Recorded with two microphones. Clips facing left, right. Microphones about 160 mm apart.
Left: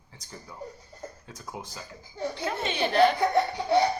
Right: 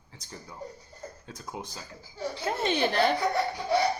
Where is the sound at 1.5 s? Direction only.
20° right (ahead or behind).